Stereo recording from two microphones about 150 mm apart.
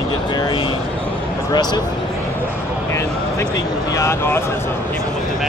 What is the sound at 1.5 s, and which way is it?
Speech, 25° left (ahead or behind).